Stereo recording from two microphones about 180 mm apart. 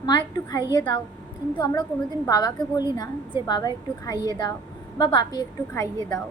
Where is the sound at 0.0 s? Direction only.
25° left (ahead or behind).